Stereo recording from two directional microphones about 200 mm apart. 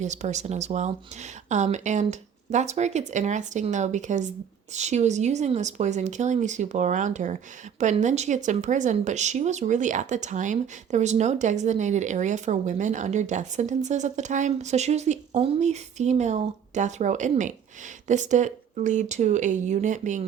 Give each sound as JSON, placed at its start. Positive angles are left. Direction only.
{"t": 0.0, "sound": "speech", "side_deg": -35}